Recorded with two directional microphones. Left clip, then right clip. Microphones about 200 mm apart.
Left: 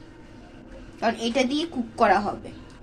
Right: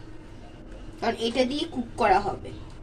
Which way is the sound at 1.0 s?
15° left (ahead or behind).